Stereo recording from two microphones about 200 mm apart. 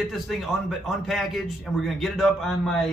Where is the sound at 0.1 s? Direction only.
Centre (ahead or behind).